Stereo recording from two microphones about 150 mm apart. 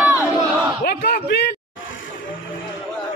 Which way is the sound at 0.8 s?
90° left.